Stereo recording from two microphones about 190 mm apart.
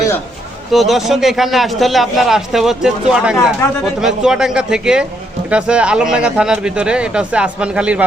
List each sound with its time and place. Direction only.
0.7 s a man's voice: centre (ahead or behind)